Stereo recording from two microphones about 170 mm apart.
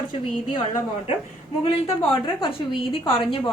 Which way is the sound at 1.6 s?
30° left (ahead or behind).